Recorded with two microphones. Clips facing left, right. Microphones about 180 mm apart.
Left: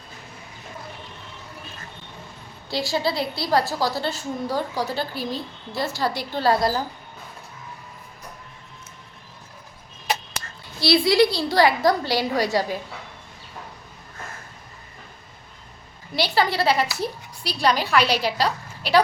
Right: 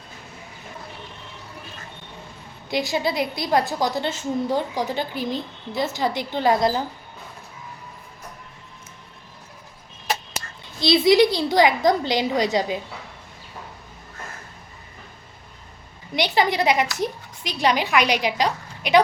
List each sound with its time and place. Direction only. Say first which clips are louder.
2.6 s a woman's voice: right 1 dB; 20° right (ahead or behind)
10.8 s a woman's voice: right 2 dB; 20° right (ahead or behind)
16.1 s a woman's voice: right 1 dB; 20° right (ahead or behind)